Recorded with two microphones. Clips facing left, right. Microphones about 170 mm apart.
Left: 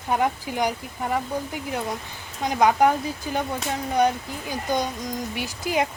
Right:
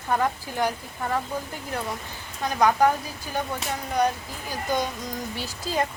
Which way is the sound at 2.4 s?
15° left (ahead or behind).